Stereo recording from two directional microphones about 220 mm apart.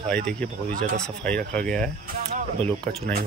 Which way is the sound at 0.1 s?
5° left (ahead or behind).